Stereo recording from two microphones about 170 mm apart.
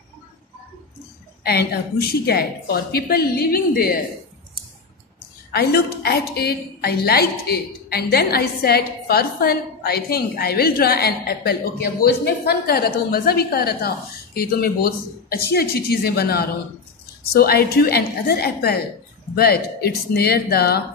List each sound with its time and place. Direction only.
1.4 s a woman's voice: 70° left (ahead or behind)
5.5 s a woman's voice: 65° left (ahead or behind)